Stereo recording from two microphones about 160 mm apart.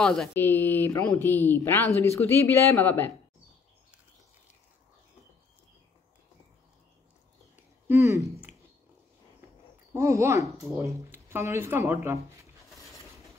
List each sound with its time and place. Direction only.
0.0 s speech: centre (ahead or behind)
0.3 s speech: 15° left (ahead or behind)
7.9 s speech: 15° right (ahead or behind)
9.9 s speech: 20° right (ahead or behind)